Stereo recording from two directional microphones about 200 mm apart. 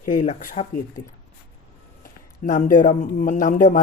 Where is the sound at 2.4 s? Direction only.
40° left (ahead or behind).